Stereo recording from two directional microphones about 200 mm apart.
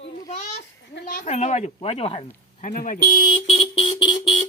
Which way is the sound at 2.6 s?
40° left (ahead or behind).